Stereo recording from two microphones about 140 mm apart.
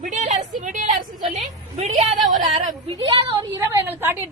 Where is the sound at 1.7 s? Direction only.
50° right (ahead or behind).